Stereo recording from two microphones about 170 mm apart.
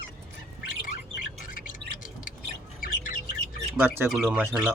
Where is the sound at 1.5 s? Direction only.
55° left (ahead or behind).